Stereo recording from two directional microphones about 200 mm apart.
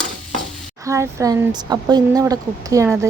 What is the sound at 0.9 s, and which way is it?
Speech, 15° right (ahead or behind).